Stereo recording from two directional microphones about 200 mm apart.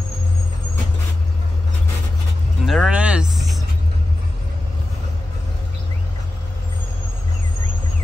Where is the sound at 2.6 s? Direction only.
Centre (ahead or behind).